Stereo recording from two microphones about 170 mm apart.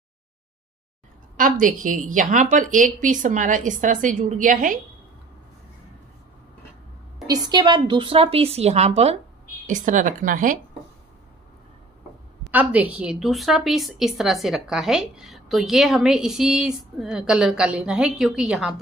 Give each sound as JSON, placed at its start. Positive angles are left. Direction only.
{"t": 1.3, "sound": "a woman's voice", "side_deg": -50}
{"t": 7.2, "sound": "a woman's voice", "side_deg": -25}
{"t": 12.4, "sound": "a woman's voice", "side_deg": -10}